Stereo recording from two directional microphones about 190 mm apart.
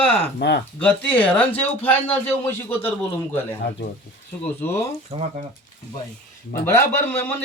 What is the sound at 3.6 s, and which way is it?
Speech, 65° left (ahead or behind).